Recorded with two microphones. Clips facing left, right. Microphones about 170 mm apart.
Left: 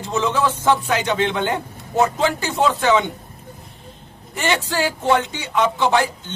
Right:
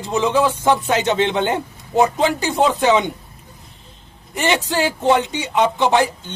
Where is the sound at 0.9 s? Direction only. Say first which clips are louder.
Right 2 dB; 25° right (ahead or behind).